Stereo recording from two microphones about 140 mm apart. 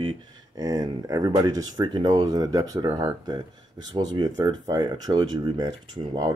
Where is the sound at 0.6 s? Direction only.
25° right (ahead or behind).